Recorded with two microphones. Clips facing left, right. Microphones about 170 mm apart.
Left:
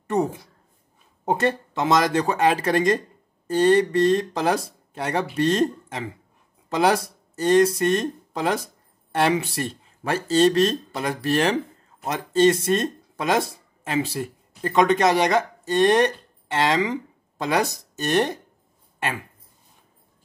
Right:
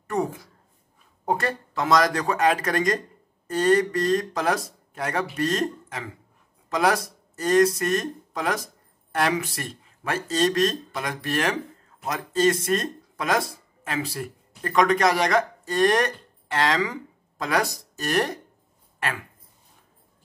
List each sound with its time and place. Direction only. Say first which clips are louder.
0.1 s speech: left 3 dB; 25° left (ahead or behind)